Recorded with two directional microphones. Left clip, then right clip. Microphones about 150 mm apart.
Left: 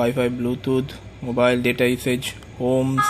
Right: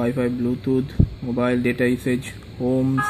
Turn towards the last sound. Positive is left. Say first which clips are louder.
# left 2 dB
turn(degrees=-15)  # may be behind; listen again after turning